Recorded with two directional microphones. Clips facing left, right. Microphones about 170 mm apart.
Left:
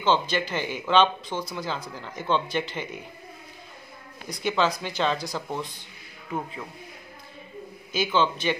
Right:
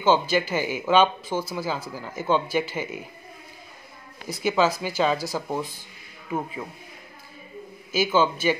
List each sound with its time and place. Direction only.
0.0 s speech: 10° right (ahead or behind)
4.3 s speech: 5° right (ahead or behind)
7.9 s speech: 5° right (ahead or behind)